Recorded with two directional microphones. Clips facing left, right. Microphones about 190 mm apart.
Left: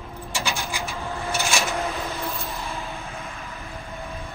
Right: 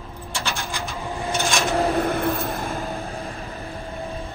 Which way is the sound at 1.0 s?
15° right (ahead or behind).